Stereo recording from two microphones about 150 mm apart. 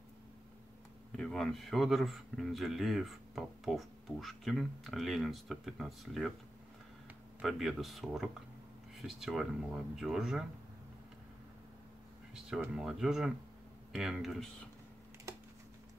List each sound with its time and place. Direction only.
1.1 s a man's voice: 5° left (ahead or behind)
7.4 s a man's voice: centre (ahead or behind)
12.4 s a man's voice: 5° right (ahead or behind)